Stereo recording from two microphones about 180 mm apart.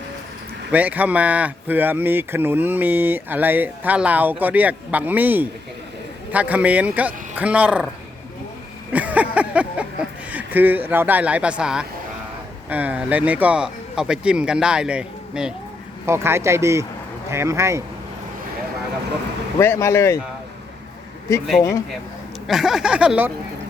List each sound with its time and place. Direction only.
0.7 s speech: 10° right (ahead or behind)
8.9 s speech: 10° right (ahead or behind)
19.5 s speech: 15° left (ahead or behind)
21.6 s speech: 15° left (ahead or behind)
22.4 s speech: centre (ahead or behind)